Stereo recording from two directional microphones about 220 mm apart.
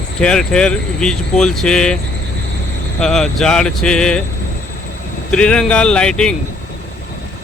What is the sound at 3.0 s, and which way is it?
Speech, centre (ahead or behind).